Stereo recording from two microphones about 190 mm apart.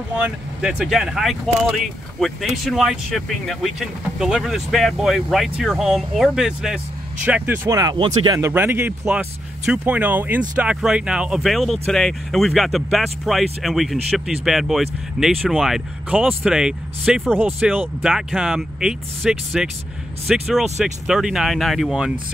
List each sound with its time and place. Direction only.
0.1 s speech: 5° right (ahead or behind); by 8.4 s 25° right (ahead or behind)
8.4 s speech: 10° right (ahead or behind)